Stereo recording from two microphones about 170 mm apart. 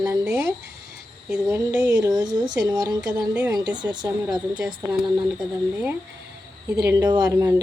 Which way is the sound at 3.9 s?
25° right (ahead or behind).